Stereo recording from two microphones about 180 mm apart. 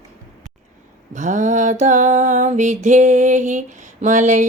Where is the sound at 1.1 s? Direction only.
45° right (ahead or behind).